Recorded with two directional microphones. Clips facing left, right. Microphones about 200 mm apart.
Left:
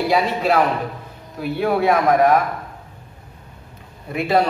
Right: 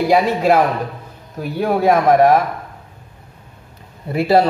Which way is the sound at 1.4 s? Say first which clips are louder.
Right 2 dB; 40° right (ahead or behind).